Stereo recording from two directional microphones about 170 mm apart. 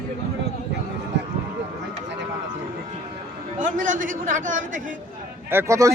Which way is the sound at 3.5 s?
50° right (ahead or behind).